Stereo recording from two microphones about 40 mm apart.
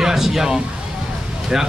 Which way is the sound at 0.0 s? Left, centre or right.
Centre.